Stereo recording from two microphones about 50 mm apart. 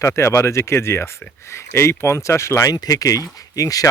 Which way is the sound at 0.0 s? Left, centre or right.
Left.